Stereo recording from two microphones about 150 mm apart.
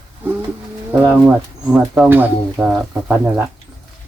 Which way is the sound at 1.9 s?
10° right (ahead or behind).